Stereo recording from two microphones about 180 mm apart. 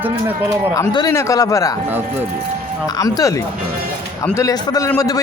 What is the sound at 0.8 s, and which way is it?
Speech, 20° left (ahead or behind).